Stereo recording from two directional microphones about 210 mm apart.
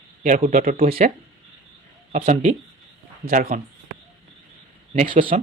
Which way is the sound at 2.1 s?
35° right (ahead or behind).